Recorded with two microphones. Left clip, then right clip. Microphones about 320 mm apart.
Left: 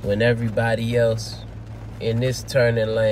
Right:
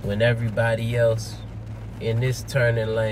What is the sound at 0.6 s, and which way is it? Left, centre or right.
Speech, centre.